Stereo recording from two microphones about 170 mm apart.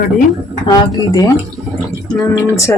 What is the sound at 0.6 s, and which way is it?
Speech, 20° left (ahead or behind).